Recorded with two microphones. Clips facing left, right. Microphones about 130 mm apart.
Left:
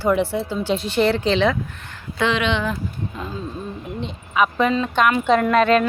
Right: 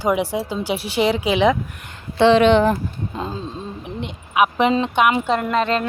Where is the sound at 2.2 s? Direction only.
35° right (ahead or behind).